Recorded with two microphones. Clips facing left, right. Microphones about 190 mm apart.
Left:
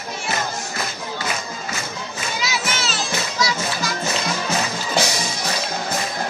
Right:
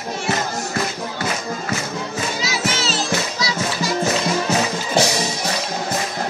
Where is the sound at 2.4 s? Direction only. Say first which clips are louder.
Even; 40° right (ahead or behind).